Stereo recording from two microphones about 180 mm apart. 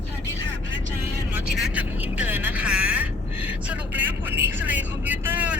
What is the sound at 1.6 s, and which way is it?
Speech, 5° right (ahead or behind).